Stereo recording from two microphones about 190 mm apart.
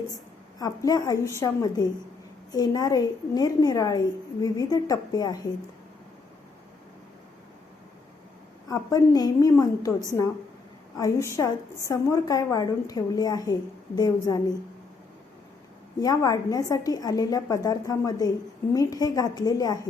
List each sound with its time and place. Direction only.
0.6 s a woman's voice: 20° left (ahead or behind)
8.7 s a woman's voice: 20° left (ahead or behind)
16.0 s a woman's voice: 20° left (ahead or behind)